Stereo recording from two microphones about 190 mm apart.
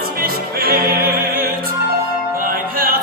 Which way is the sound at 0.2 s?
50° right (ahead or behind).